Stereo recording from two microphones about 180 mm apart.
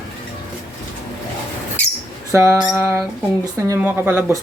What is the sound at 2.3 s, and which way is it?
Speech, 15° right (ahead or behind).